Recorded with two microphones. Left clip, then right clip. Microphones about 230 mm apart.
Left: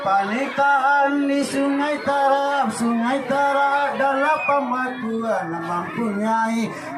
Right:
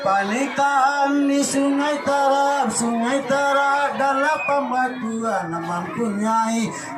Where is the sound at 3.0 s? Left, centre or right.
Right.